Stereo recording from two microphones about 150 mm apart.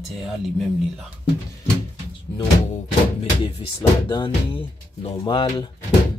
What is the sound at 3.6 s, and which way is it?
Speech, 35° left (ahead or behind).